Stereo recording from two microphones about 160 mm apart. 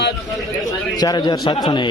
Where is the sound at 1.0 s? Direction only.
25° left (ahead or behind).